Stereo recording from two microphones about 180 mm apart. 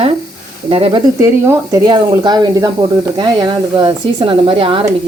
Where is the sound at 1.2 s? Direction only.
15° right (ahead or behind).